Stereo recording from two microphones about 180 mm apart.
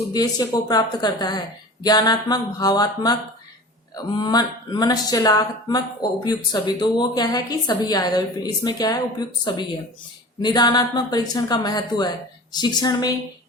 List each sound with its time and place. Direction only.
0.1 s speech: 20° left (ahead or behind)